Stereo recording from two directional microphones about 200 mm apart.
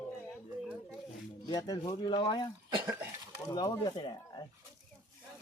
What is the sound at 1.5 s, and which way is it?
Speech, 20° left (ahead or behind).